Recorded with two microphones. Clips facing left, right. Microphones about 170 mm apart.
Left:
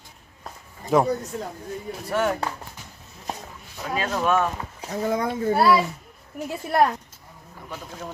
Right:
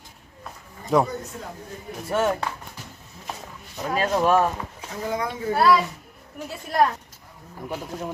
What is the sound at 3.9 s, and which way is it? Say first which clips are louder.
Speech: right 3 dB; 30° right (ahead or behind).